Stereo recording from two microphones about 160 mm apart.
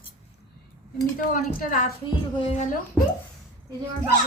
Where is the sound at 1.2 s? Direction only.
55° left (ahead or behind).